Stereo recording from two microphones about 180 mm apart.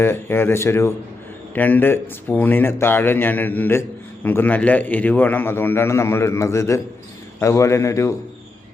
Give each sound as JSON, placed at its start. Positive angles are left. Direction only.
{"t": 0.0, "sound": "speech", "side_deg": 15}